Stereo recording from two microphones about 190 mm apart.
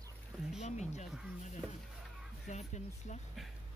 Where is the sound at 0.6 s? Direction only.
35° left (ahead or behind).